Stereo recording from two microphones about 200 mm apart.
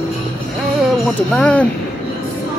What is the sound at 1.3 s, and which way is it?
Speech, 5° left (ahead or behind).